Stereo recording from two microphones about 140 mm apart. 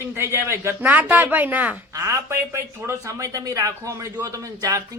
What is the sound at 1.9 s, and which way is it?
A man's voice, 20° right (ahead or behind).